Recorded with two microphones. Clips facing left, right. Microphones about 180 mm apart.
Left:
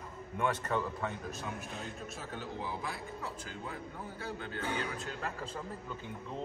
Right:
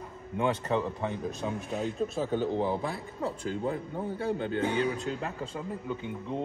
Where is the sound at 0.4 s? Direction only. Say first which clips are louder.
Right 5 dB; 25° right (ahead or behind).